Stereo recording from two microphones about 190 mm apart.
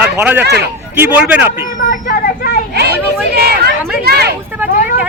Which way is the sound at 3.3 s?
55° right (ahead or behind).